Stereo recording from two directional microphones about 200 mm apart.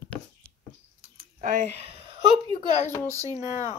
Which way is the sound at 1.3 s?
40° right (ahead or behind).